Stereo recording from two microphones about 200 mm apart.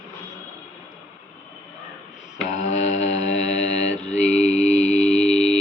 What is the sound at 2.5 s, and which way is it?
Mantra, 35° left (ahead or behind).